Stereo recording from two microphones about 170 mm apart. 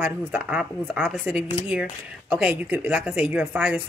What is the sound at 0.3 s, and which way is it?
A woman's voice, 10° right (ahead or behind).